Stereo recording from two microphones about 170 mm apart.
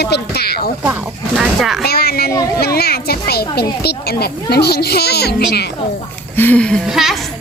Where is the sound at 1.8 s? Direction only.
65° left (ahead or behind).